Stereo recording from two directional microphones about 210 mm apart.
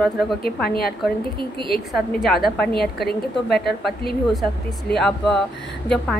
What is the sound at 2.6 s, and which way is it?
A woman's voice, 50° left (ahead or behind).